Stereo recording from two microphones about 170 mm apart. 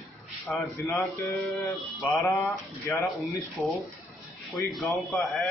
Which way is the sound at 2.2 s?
15° left (ahead or behind).